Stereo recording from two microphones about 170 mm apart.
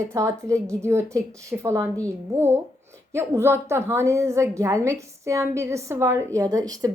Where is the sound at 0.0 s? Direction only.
20° right (ahead or behind).